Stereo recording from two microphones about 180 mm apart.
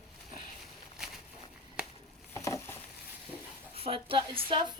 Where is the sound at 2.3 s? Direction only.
15° left (ahead or behind).